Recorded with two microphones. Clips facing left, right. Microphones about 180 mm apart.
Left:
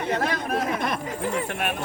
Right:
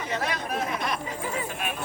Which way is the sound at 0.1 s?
55° left (ahead or behind).